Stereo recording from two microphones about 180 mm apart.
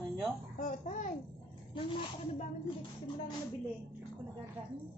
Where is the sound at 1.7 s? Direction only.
30° left (ahead or behind).